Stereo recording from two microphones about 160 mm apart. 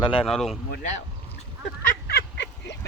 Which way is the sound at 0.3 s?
Centre (ahead or behind).